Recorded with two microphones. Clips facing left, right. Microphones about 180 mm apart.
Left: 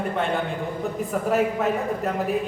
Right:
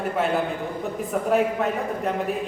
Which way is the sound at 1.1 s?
Centre (ahead or behind).